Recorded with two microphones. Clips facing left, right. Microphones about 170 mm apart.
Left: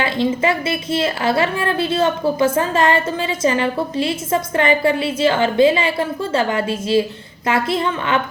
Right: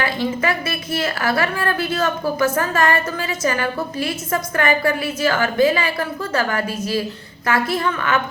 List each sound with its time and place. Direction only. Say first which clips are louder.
0.0 s a woman's voice: left 3 dB; 25° left (ahead or behind)